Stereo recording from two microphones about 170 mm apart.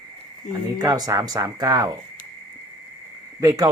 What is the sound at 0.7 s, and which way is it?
Speech, 25° right (ahead or behind).